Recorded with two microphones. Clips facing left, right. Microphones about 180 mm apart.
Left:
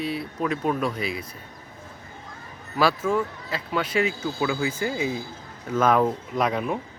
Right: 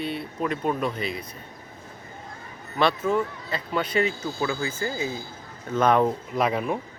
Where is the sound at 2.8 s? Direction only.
5° left (ahead or behind).